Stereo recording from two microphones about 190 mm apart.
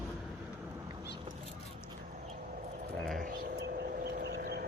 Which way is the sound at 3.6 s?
60° right (ahead or behind).